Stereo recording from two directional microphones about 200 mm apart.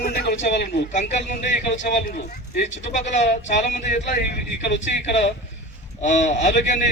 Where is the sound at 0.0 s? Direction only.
50° left (ahead or behind).